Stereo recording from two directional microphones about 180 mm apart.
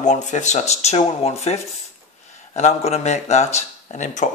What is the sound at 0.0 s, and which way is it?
Speech, 40° left (ahead or behind).